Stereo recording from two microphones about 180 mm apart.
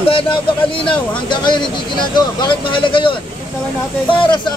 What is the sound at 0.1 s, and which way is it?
Speech, 30° left (ahead or behind).